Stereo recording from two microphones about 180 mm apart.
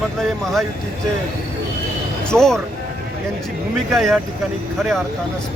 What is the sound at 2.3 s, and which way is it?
Speech, 5° left (ahead or behind).